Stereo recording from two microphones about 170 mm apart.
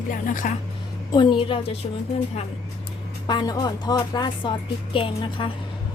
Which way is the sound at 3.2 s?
25° left (ahead or behind).